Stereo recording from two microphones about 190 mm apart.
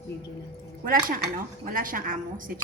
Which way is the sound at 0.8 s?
45° right (ahead or behind).